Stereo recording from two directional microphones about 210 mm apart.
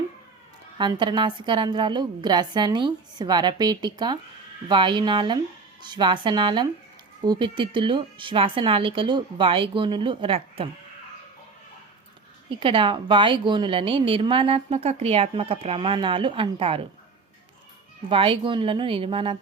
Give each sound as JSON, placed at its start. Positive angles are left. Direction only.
{"t": 0.8, "sound": "a woman's voice", "side_deg": -20}
{"t": 12.5, "sound": "a woman's voice", "side_deg": -25}
{"t": 18.1, "sound": "a woman's voice", "side_deg": -25}